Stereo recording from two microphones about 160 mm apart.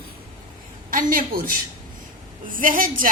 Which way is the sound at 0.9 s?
60° right (ahead or behind).